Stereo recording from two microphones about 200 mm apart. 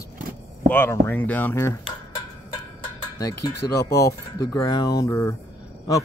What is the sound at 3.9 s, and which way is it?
Speech, 15° left (ahead or behind).